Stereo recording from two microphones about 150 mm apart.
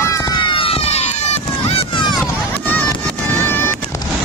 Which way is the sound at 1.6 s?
35° left (ahead or behind).